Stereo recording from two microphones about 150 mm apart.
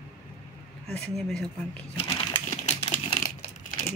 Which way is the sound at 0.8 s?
5° left (ahead or behind).